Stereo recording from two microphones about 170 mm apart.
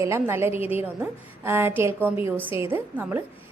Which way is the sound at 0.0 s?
15° right (ahead or behind).